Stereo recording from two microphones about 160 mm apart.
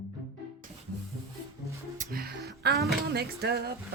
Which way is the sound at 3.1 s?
80° right.